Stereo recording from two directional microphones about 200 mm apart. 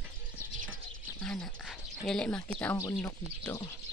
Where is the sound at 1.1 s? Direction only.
5° left (ahead or behind).